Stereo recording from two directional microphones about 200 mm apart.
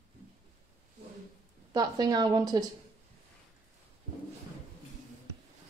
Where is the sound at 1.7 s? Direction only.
20° right (ahead or behind).